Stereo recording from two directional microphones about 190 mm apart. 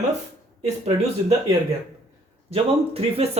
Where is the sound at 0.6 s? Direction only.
35° right (ahead or behind).